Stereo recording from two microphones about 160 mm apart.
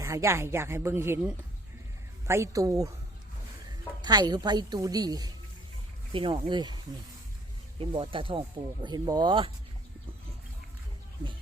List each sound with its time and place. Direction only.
0.0 s a woman's voice: 20° right (ahead or behind)
4.0 s a woman's voice: 25° right (ahead or behind)